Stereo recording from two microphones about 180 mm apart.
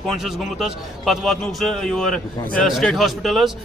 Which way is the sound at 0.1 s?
Centre (ahead or behind).